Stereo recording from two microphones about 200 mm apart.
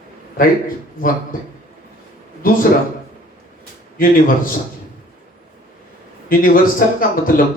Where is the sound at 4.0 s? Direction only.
45° left (ahead or behind).